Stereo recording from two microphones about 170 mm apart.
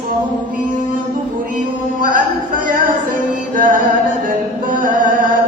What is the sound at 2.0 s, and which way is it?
Music, 55° right (ahead or behind).